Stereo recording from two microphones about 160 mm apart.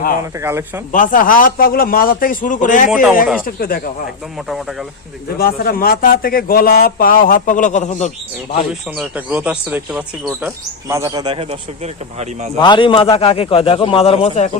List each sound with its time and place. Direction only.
0.2 s speech: 15° right (ahead or behind)
0.9 s speech: 55° left (ahead or behind)
2.9 s speech: centre (ahead or behind)
3.4 s speech: 65° left (ahead or behind)
5.4 s speech: 70° left (ahead or behind); by 8.1 s 45° left (ahead or behind)
9.0 s speech: 10° right (ahead or behind)
10.4 s speech: 20° right (ahead or behind)
12.5 s a man's voice: 30° left (ahead or behind)